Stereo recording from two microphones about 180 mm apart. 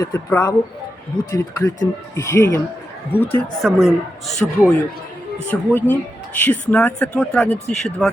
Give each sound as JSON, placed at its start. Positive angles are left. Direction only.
{"t": 0.0, "sound": "speech", "side_deg": 15}
{"t": 3.6, "sound": "speech", "side_deg": 0}